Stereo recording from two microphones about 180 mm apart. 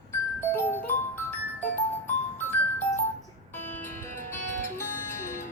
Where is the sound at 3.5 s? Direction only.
10° left (ahead or behind).